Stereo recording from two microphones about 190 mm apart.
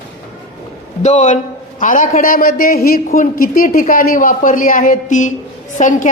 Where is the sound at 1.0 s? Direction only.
35° left (ahead or behind).